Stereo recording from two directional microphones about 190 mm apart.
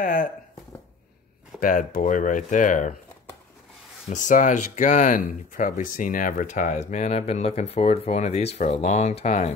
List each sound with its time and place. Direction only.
0.0 s speech: 45° left (ahead or behind)
1.6 s speech: 45° left (ahead or behind)
4.1 s speech: 40° left (ahead or behind)